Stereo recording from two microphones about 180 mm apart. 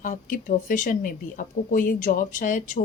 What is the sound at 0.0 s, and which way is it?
Speech, 45° left (ahead or behind).